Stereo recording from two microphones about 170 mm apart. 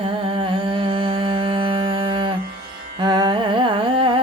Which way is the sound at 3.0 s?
25° right (ahead or behind).